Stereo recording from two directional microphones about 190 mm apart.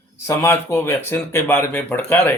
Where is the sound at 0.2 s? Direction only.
15° left (ahead or behind).